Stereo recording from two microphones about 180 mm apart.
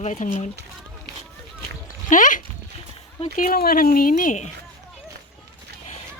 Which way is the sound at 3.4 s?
55° left (ahead or behind).